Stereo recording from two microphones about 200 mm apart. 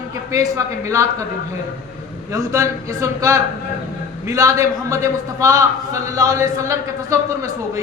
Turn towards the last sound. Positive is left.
turn(degrees=-15)  # may be behind; listen again after turning